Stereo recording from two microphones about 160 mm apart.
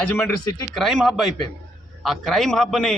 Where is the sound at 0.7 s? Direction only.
Centre (ahead or behind).